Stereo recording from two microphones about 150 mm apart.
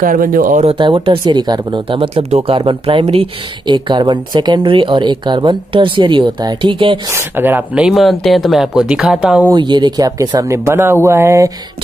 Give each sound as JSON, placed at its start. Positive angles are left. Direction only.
{"t": 0.0, "sound": "speech", "side_deg": -65}
{"t": 0.7, "sound": "speech", "side_deg": -35}
{"t": 7.1, "sound": "speech", "side_deg": -15}
{"t": 9.5, "sound": "speech", "side_deg": -30}